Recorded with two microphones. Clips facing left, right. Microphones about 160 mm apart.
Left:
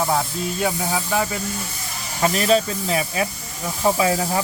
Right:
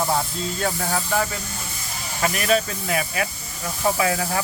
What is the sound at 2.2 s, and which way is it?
Speech, 25° left (ahead or behind).